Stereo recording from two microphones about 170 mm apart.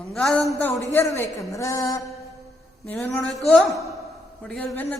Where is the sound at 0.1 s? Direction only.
Centre (ahead or behind).